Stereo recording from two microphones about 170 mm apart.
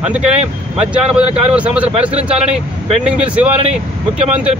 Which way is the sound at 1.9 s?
40° right (ahead or behind).